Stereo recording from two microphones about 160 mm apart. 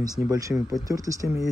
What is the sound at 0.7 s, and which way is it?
Speech, 20° right (ahead or behind).